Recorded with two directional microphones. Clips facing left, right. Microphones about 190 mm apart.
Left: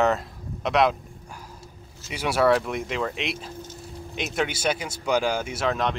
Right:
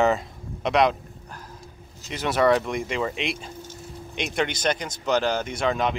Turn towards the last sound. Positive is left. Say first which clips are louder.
# right 1 dB
turn(degrees=0)  # may be behind; listen again after turning